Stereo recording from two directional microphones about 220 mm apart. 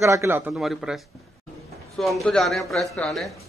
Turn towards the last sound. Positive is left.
turn(degrees=0)  # may be behind; listen again after turning